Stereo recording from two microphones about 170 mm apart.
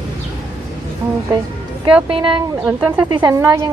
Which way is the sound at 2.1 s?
30° right (ahead or behind).